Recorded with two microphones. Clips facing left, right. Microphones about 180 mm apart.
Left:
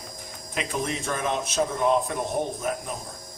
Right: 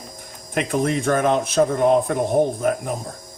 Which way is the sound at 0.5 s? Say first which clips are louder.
Right 8 dB; 55° right (ahead or behind).